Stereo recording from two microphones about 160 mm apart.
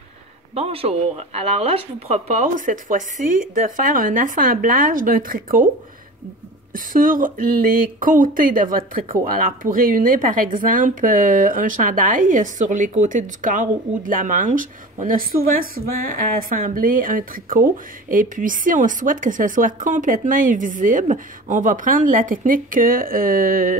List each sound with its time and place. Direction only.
0.6 s speech: 40° right (ahead or behind); by 5.7 s 60° right (ahead or behind)
6.7 s speech: 60° right (ahead or behind)